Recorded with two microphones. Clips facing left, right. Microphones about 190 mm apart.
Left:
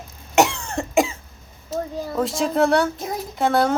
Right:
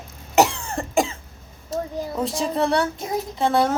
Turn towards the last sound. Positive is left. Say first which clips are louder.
# left 1 dB
turn(degrees=0)  # may be behind; listen again after turning